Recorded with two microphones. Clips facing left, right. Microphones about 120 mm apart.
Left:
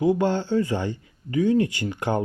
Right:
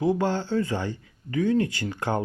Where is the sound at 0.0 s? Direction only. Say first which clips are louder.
Left 3 dB; 15° left (ahead or behind).